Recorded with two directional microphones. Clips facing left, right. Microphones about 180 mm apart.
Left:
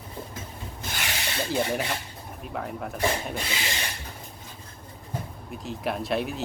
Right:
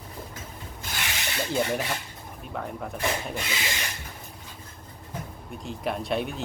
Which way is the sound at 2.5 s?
Centre (ahead or behind).